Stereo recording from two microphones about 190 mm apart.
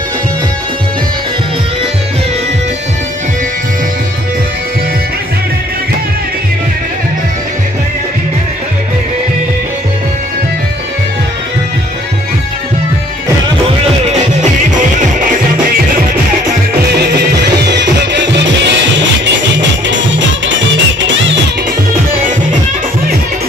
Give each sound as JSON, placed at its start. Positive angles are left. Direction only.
{"t": 17.6, "sound": "music", "side_deg": -65}